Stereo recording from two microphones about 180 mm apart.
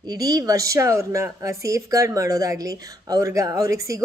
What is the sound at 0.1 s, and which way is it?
Speech, 20° right (ahead or behind).